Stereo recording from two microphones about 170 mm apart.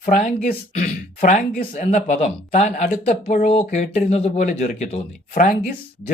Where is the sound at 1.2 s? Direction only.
50° left (ahead or behind).